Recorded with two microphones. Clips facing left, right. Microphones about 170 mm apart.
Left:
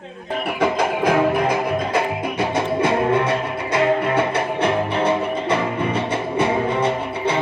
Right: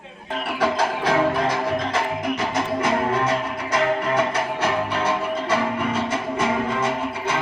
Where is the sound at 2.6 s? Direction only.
30° left (ahead or behind).